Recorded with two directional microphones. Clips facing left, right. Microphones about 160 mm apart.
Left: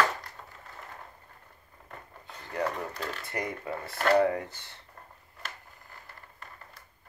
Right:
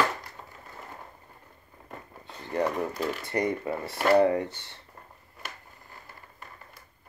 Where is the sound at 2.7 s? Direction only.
10° right (ahead or behind).